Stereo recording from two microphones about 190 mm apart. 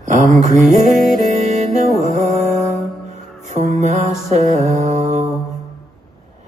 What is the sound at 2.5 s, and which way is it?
Music, centre (ahead or behind).